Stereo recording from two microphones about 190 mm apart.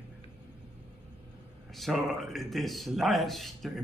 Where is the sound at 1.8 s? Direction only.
Centre (ahead or behind).